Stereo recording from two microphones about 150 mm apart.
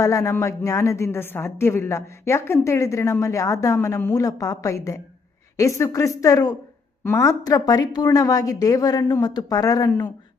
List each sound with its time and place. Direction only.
0.0 s a woman's voice: 20° left (ahead or behind)